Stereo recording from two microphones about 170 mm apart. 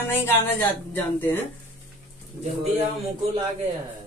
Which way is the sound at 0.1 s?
10° left (ahead or behind).